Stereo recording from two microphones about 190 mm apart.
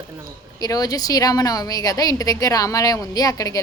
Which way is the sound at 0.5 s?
20° left (ahead or behind).